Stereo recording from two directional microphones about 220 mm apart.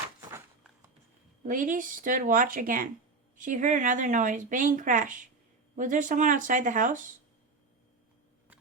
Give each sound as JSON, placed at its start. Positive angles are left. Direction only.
{"t": 1.5, "sound": "speech", "side_deg": -35}